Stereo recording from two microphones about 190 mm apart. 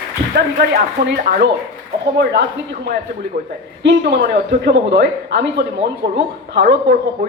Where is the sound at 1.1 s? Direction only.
50° right (ahead or behind).